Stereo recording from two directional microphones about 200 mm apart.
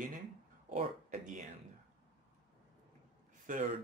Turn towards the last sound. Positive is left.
turn(degrees=-40)  # may be behind; listen again after turning